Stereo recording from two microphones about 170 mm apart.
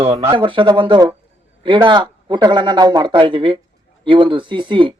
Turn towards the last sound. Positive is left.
turn(degrees=-30)  # may be behind; listen again after turning